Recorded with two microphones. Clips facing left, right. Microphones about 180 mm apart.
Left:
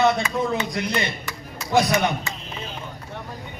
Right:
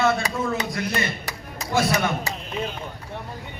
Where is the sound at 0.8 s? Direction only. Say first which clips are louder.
Left 1 dB; 20° left (ahead or behind).